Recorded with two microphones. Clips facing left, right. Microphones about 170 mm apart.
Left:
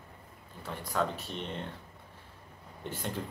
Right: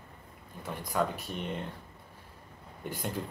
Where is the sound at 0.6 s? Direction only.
15° right (ahead or behind).